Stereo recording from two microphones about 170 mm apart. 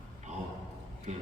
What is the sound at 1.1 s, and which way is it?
Speech, 45° right (ahead or behind).